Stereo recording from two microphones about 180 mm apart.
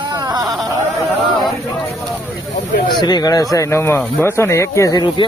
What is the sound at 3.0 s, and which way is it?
Speech, 20° left (ahead or behind).